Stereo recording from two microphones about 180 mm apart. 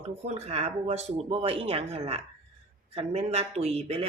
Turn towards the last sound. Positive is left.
turn(degrees=-35)  # may be behind; listen again after turning